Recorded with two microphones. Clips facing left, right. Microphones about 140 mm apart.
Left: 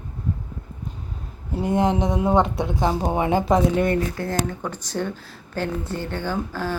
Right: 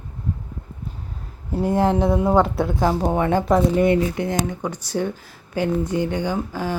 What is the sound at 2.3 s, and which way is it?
Speech, 5° right (ahead or behind).